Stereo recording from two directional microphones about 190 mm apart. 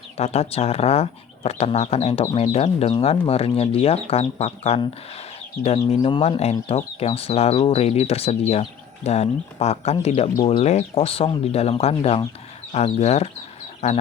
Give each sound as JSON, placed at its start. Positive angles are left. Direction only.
{"t": 0.2, "sound": "speech", "side_deg": 35}